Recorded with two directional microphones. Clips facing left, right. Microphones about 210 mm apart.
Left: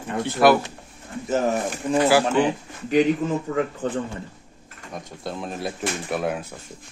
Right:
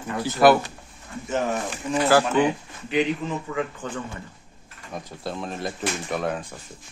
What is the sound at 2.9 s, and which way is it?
Speech, 45° left (ahead or behind).